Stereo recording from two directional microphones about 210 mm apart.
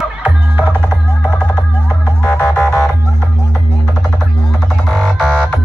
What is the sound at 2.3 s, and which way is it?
Music, 10° left (ahead or behind).